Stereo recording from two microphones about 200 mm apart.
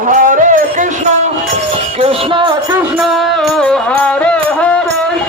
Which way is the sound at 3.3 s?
5° left (ahead or behind).